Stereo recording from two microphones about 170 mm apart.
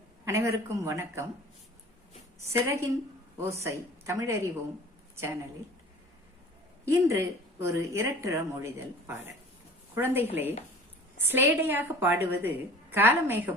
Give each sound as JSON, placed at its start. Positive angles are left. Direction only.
{"t": 0.3, "sound": "a woman's voice", "side_deg": -15}
{"t": 2.4, "sound": "a woman's voice", "side_deg": -15}
{"t": 6.9, "sound": "a woman's voice", "side_deg": -15}